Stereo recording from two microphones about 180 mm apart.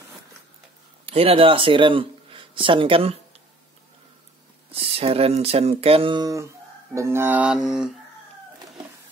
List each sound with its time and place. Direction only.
1.0 s speech: 35° right (ahead or behind)
4.6 s speech: 35° right (ahead or behind); by 7.9 s 5° right (ahead or behind)